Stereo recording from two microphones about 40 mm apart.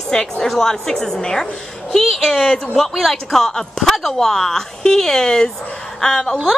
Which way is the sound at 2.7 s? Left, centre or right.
Centre.